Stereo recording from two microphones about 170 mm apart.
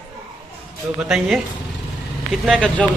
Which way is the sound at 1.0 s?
Centre (ahead or behind).